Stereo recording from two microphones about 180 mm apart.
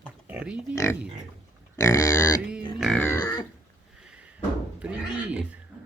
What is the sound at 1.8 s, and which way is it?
Grunt, 15° left (ahead or behind).